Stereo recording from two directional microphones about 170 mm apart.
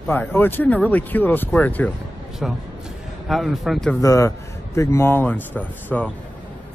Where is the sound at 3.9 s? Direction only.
20° left (ahead or behind).